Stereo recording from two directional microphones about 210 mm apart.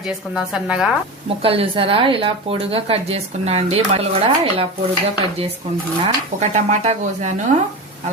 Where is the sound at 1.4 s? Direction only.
25° right (ahead or behind).